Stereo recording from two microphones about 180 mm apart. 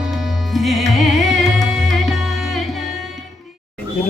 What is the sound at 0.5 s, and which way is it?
Music, centre (ahead or behind).